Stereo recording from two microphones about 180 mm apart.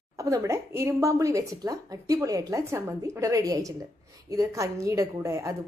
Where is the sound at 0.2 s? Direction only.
15° right (ahead or behind).